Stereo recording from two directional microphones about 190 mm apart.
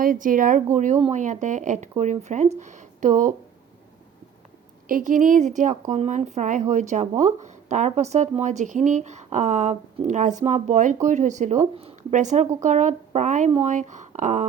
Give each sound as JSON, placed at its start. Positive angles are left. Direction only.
{"t": 0.0, "sound": "speech", "side_deg": -45}
{"t": 4.9, "sound": "a woman's voice", "side_deg": -45}